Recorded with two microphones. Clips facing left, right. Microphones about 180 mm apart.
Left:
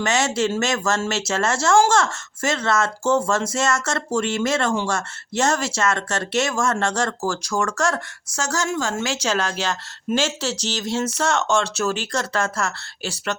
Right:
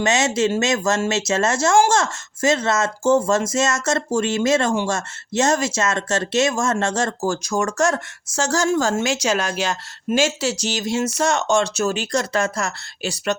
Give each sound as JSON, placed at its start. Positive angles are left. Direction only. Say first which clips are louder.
{"t": 0.0, "sound": "speech", "louder": "right 2 dB", "side_deg": -20}
{"t": 9.0, "sound": "speech", "louder": "right 2 dB", "side_deg": -15}